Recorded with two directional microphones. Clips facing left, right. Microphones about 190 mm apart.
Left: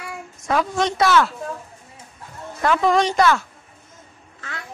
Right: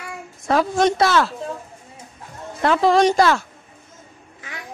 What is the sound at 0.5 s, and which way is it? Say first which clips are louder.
Speech: right 4 dB; 35° right (ahead or behind).